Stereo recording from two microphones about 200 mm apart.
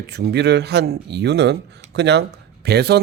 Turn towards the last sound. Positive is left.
turn(degrees=-55)  # may be behind; listen again after turning